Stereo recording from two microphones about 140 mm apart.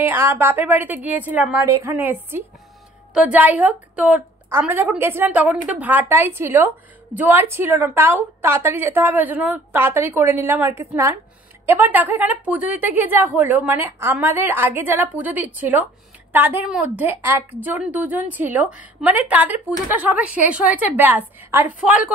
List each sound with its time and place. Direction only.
0.0 s a woman's voice: 15° right (ahead or behind)